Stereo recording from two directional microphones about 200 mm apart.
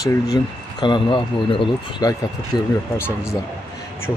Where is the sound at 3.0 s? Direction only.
10° left (ahead or behind).